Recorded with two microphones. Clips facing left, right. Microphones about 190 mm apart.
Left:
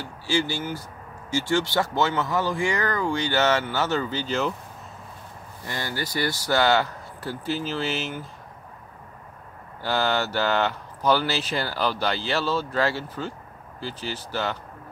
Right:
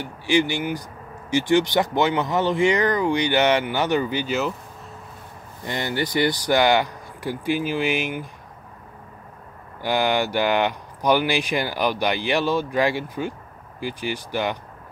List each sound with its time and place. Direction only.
0.0 s speech: 15° right (ahead or behind)
5.7 s speech: 20° right (ahead or behind)
9.8 s speech: 15° right (ahead or behind)